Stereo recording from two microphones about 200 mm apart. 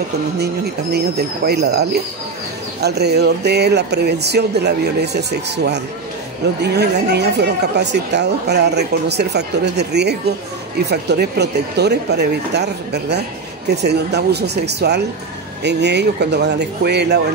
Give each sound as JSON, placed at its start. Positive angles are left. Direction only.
{"t": 0.9, "sound": "a woman's voice", "side_deg": -55}